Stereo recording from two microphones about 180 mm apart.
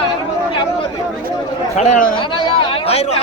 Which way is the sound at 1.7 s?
35° left (ahead or behind).